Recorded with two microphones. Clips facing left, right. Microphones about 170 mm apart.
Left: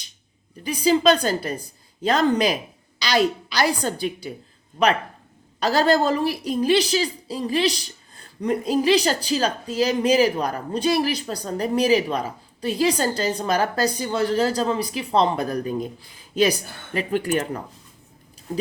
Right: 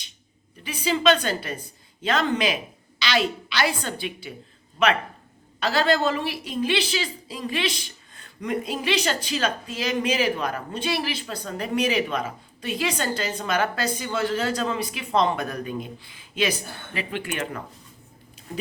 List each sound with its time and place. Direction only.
0.6 s a woman's voice: 40° left (ahead or behind)